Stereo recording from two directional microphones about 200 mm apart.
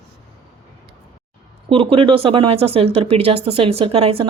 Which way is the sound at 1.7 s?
25° right (ahead or behind).